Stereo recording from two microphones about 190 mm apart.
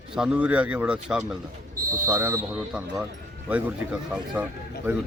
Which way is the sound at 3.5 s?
5° right (ahead or behind).